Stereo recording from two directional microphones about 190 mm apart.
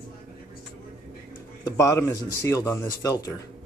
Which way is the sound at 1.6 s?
15° left (ahead or behind).